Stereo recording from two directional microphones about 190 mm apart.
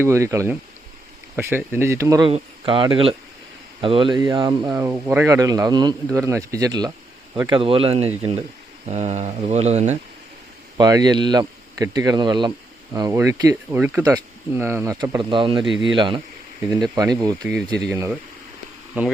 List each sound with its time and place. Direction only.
0.0 s speech: 15° right (ahead or behind)
2.3 s speech: 25° right (ahead or behind)
10.8 s speech: 20° right (ahead or behind)